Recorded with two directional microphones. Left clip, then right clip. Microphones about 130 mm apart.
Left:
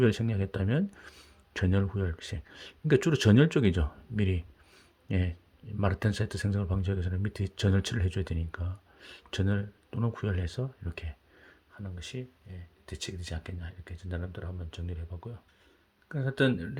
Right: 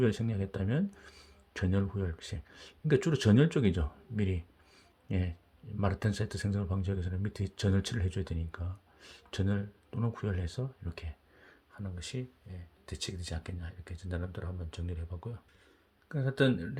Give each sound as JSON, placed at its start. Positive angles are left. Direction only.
{"t": 0.0, "sound": "speech", "side_deg": 30}
{"t": 11.7, "sound": "speech", "side_deg": 5}
{"t": 16.0, "sound": "speech", "side_deg": 15}